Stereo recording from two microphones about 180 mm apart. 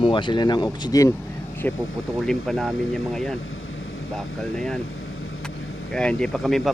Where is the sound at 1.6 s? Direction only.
10° left (ahead or behind).